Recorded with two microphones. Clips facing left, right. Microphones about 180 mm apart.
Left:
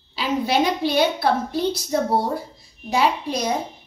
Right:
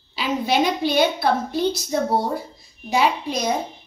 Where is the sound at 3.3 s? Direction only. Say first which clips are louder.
Even; 35° left (ahead or behind).